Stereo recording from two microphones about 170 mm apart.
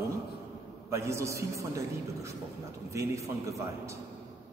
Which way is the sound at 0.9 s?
15° right (ahead or behind).